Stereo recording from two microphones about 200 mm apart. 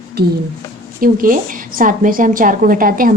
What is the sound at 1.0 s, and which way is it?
A woman's voice, 45° right (ahead or behind).